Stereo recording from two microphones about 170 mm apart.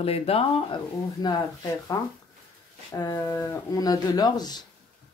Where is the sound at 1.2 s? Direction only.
20° left (ahead or behind).